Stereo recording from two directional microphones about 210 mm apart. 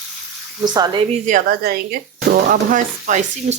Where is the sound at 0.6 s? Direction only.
20° right (ahead or behind).